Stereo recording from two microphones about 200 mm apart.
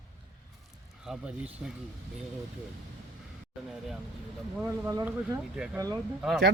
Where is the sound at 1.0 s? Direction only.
5° right (ahead or behind).